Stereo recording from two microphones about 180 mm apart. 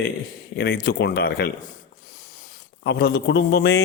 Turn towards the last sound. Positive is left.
turn(degrees=60)  # may be behind; listen again after turning